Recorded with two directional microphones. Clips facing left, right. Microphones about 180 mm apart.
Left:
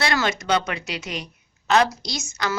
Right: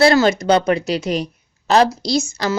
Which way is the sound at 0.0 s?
30° right (ahead or behind).